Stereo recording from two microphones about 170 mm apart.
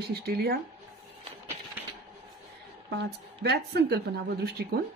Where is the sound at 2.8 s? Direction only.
80° right.